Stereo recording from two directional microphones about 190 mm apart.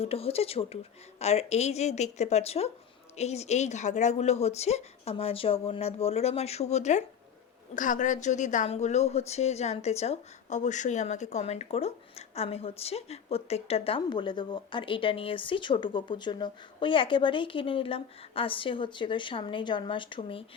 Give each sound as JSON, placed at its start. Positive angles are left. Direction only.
{"t": 0.0, "sound": "speech", "side_deg": 30}